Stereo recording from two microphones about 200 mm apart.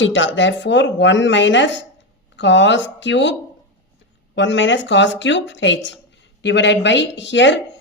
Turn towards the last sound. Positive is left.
turn(degrees=65)  # may be behind; listen again after turning